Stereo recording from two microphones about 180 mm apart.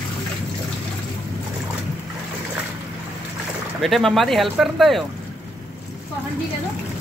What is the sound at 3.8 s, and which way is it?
Speech, centre (ahead or behind).